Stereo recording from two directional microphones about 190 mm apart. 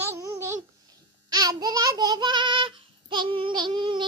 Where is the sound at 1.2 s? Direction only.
20° right (ahead or behind).